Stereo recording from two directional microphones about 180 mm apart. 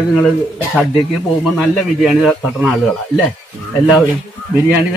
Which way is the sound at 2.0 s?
Centre (ahead or behind).